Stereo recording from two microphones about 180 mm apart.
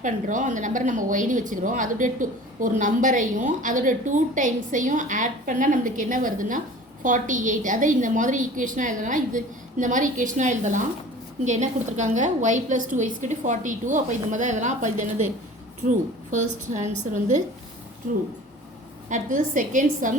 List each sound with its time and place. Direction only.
0.0 s a woman's voice: 45° right (ahead or behind)
16.3 s a woman's voice: 40° right (ahead or behind)